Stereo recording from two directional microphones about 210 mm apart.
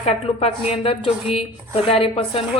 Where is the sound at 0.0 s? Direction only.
30° left (ahead or behind).